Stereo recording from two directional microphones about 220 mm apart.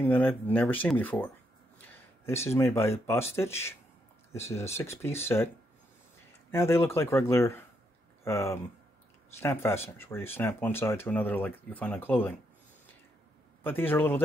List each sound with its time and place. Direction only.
0.0 s speech: 10° left (ahead or behind)
6.5 s speech: 10° left (ahead or behind)
13.7 s speech: 10° left (ahead or behind)